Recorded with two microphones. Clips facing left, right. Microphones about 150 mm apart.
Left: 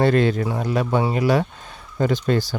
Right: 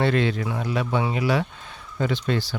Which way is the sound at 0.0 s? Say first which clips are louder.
Left 4 dB; 40° left (ahead or behind).